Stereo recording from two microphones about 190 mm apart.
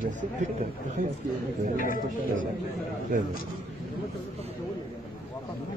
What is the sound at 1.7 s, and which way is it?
Speech, 45° left (ahead or behind).